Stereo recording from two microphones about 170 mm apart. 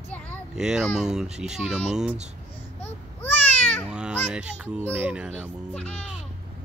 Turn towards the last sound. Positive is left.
turn(degrees=5)  # may be behind; listen again after turning